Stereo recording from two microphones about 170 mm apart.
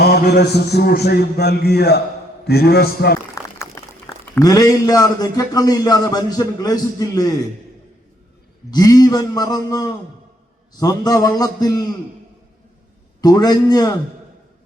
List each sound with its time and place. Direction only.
0.0 s a sound: 70° left (ahead or behind)
3.6 s a man's voice: 20° left (ahead or behind)
8.7 s a man's voice: 25° left (ahead or behind)
13.2 s a man's voice: 20° left (ahead or behind)